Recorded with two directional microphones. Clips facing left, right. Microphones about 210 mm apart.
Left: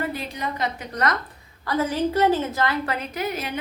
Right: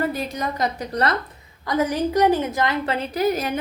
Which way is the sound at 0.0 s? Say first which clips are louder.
Right 4 dB; 45° right (ahead or behind).